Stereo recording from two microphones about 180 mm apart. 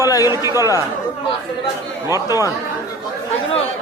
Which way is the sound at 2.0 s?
20° left (ahead or behind).